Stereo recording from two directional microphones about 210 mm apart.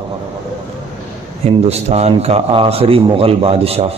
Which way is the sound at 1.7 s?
30° right (ahead or behind).